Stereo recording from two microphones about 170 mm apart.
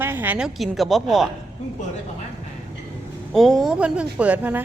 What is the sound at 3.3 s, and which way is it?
A woman's voice, centre (ahead or behind).